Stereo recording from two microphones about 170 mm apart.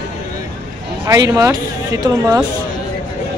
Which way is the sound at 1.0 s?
20° right (ahead or behind).